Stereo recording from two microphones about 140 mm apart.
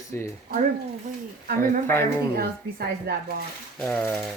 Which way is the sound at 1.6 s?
15° left (ahead or behind).